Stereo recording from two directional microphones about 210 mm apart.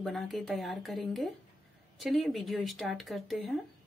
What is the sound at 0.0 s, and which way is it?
Speech, centre (ahead or behind).